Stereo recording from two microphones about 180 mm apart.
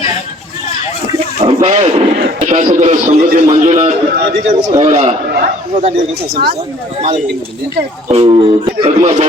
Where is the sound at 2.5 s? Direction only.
40° right (ahead or behind).